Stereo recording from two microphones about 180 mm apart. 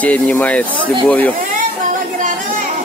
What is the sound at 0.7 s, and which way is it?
Speech, 30° right (ahead or behind).